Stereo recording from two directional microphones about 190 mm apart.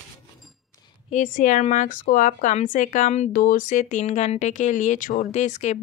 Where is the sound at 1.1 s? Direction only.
40° left (ahead or behind).